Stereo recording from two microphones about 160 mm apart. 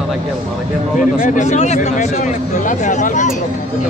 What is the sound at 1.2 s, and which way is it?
Speech, 50° left (ahead or behind).